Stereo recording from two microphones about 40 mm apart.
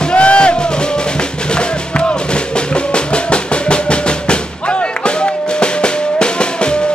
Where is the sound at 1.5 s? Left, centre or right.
Left.